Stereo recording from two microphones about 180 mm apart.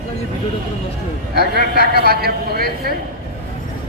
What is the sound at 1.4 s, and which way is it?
A man's voice, 60° right (ahead or behind).